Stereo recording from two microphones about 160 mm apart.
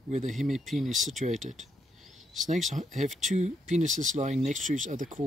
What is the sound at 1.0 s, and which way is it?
Speech, 50° right (ahead or behind).